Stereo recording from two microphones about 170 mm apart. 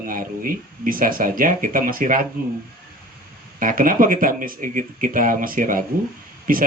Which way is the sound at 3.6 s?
55° right (ahead or behind).